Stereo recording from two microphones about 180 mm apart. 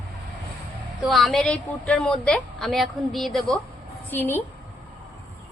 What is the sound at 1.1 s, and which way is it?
A woman's voice, centre (ahead or behind).